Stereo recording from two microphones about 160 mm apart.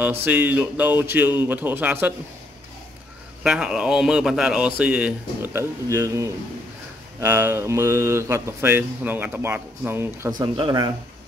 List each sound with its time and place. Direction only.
0.0 s speech: 10° right (ahead or behind)
3.4 s a man's voice: 5° right (ahead or behind)
10.4 s speech: 30° right (ahead or behind)